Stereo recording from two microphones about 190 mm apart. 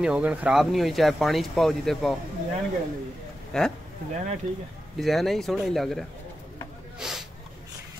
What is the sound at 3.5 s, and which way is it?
Speech, 5° left (ahead or behind).